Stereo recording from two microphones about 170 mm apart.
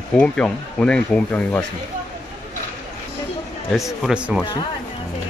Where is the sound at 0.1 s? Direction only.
5° left (ahead or behind).